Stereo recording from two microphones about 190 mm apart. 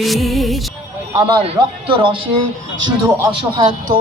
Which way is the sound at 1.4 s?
25° right (ahead or behind).